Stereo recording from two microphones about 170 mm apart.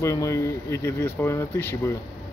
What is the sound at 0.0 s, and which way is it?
A man's voice, 20° left (ahead or behind).